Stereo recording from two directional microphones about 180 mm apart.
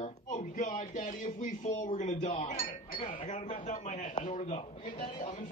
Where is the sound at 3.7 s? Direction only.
45° left (ahead or behind).